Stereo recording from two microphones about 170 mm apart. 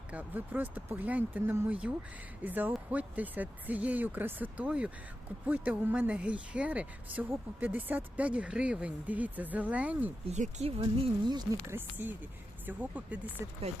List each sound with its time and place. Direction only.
0.1 s speech: 10° right (ahead or behind)
10.2 s speech: 40° right (ahead or behind); by 11.8 s 25° right (ahead or behind)
12.0 s speech: 10° right (ahead or behind)